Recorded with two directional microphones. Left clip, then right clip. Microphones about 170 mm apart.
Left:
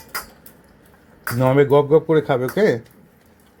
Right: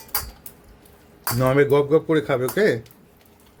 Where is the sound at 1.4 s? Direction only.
Centre (ahead or behind).